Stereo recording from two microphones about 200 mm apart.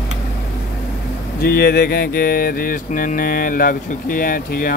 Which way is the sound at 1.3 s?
50° left (ahead or behind).